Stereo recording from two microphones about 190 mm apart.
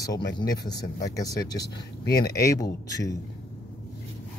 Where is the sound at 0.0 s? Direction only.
20° left (ahead or behind).